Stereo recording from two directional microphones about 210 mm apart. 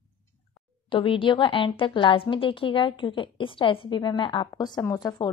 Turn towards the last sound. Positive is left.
turn(degrees=15)  # may be behind; listen again after turning